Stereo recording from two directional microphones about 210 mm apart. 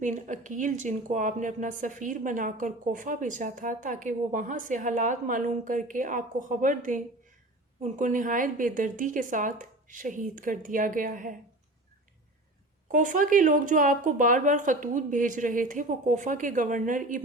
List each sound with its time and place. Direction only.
0.0 s speech: 35° right (ahead or behind)
12.9 s speech: 40° right (ahead or behind)